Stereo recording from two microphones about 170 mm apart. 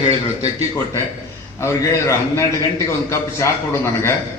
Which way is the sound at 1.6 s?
15° left (ahead or behind).